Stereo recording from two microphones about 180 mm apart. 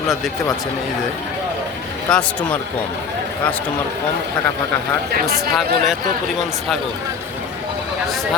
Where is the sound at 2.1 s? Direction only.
5° left (ahead or behind).